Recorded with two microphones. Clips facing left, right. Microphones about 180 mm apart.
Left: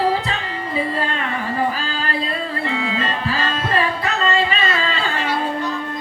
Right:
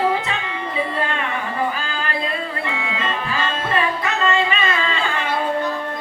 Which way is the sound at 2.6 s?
35° left (ahead or behind).